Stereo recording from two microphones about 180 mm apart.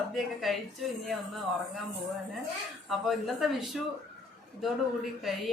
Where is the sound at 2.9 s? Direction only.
Centre (ahead or behind).